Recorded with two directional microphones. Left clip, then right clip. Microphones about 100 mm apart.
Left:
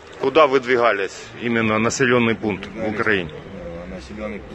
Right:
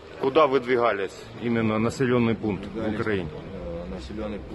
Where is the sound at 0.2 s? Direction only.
5° left (ahead or behind).